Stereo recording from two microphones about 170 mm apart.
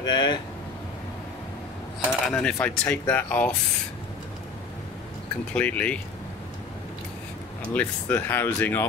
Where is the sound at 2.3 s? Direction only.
5° left (ahead or behind).